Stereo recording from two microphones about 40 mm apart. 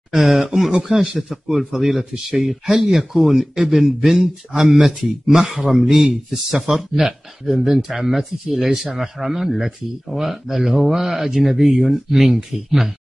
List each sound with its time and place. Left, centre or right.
0.1 s speech: centre
1.7 s speech: centre